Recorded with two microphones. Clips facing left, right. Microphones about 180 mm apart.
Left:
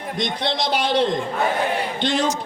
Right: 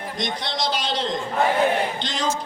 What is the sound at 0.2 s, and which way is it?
A man's voice, 60° left (ahead or behind).